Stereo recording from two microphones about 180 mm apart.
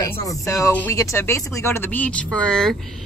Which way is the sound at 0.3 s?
15° left (ahead or behind).